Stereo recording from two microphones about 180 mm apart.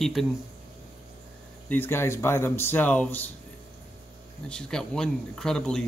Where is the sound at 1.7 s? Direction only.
15° left (ahead or behind).